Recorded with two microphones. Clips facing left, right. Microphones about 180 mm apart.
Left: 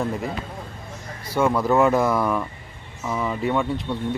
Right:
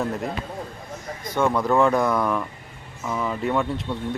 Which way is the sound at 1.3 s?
5° left (ahead or behind).